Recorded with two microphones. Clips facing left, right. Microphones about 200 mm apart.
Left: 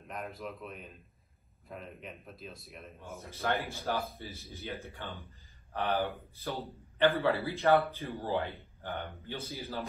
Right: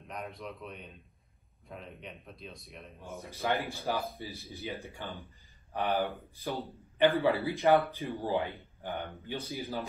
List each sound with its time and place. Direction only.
0.0 s speech: centre (ahead or behind)
3.2 s a man's voice: 15° right (ahead or behind)